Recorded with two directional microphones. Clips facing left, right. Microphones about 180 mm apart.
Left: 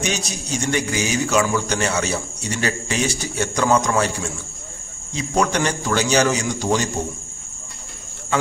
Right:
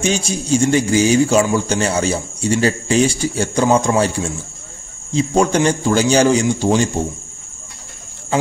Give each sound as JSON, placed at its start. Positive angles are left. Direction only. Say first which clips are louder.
{"t": 0.0, "sound": "a man's voice", "louder": "right 6 dB", "side_deg": -30}